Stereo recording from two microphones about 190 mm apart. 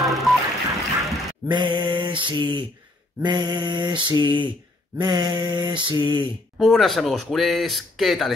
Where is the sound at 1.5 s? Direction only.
25° right (ahead or behind).